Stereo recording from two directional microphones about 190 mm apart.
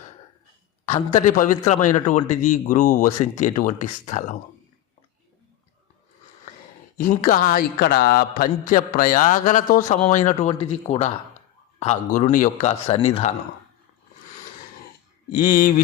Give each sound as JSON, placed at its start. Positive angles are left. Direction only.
{"t": 1.4, "sound": "speech", "side_deg": 40}
{"t": 6.9, "sound": "a man's voice", "side_deg": 45}
{"t": 15.3, "sound": "a man's voice", "side_deg": 50}